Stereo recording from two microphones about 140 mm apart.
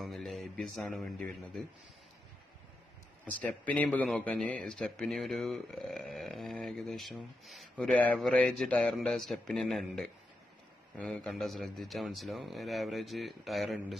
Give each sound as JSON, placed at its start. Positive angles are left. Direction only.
{"t": 0.0, "sound": "a man's voice", "side_deg": 0}
{"t": 3.3, "sound": "a man's voice", "side_deg": 10}